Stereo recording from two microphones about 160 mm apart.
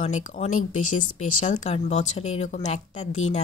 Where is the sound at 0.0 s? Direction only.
45° left (ahead or behind).